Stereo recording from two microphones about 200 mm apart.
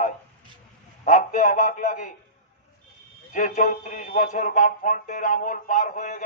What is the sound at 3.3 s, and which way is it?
A man's voice, 40° left (ahead or behind).